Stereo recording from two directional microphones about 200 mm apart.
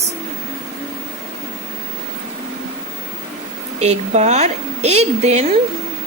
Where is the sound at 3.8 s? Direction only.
35° right (ahead or behind).